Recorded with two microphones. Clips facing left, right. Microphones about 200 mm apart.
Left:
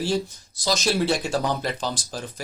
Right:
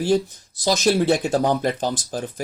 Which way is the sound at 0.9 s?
50° right (ahead or behind).